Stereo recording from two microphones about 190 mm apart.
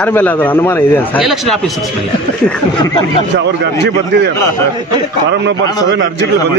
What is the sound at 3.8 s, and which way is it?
Speech, 65° right (ahead or behind).